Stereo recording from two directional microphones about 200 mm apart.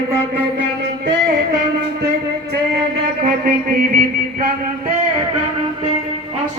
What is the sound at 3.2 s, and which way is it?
Music, 45° right (ahead or behind).